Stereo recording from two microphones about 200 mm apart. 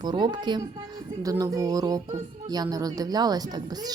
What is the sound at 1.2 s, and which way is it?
Music, 15° right (ahead or behind).